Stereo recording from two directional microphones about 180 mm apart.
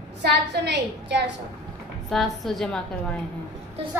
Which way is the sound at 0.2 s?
70° right (ahead or behind).